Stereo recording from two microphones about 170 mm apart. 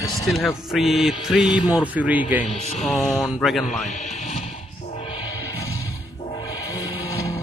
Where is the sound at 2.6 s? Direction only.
40° left (ahead or behind).